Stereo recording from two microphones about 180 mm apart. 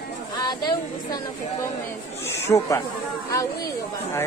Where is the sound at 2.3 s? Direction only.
15° left (ahead or behind).